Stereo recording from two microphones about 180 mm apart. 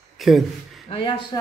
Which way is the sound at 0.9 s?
30° left (ahead or behind).